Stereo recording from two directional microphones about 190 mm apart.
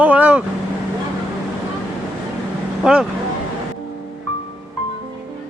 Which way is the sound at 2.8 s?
5° right (ahead or behind).